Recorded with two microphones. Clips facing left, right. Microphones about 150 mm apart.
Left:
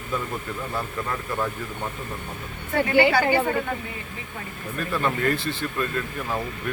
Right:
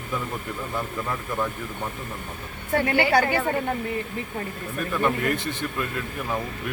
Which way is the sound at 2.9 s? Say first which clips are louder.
Left 4 dB; 20° left (ahead or behind).